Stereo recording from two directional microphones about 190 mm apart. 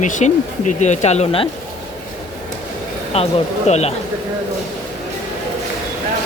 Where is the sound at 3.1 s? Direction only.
30° left (ahead or behind).